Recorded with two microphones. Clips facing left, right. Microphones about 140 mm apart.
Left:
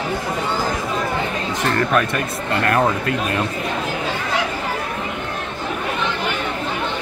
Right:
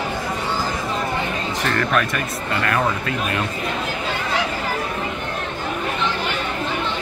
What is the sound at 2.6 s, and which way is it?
Speech, 45° left (ahead or behind).